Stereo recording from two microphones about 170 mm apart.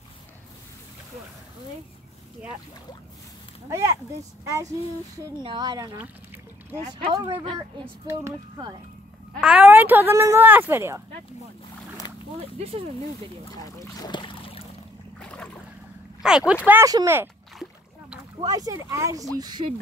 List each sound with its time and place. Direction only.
3.6 s speech: 15° right (ahead or behind)
5.1 s speech: 25° right (ahead or behind)
5.9 s a sound: 10° right (ahead or behind)
6.9 s speech: 30° right (ahead or behind)
8.1 s speech: 15° right (ahead or behind)
9.4 s speech: 5° right (ahead or behind)
13.7 s speech: 25° left (ahead or behind)
15.1 s boat: 5° left (ahead or behind)
16.2 s speech: 5° right (ahead or behind)
18.4 s speech: 20° right (ahead or behind)